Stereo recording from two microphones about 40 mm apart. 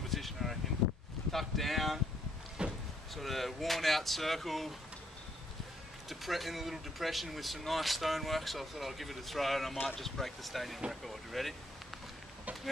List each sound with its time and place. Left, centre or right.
0.1 s a sound: centre
1.3 s wind: centre
2.6 s vehicle: right
3.2 s speech: centre
6.0 s speech: centre